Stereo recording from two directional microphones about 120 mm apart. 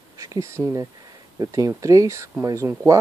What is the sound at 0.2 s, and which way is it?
Speech, 25° right (ahead or behind).